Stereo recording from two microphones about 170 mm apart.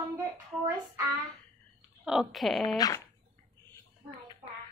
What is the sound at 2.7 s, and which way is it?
Speech, 20° left (ahead or behind).